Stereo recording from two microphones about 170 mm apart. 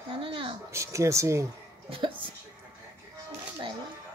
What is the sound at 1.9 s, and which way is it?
Speech, 30° right (ahead or behind).